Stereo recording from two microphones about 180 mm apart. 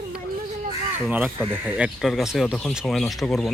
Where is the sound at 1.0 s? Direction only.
5° right (ahead or behind).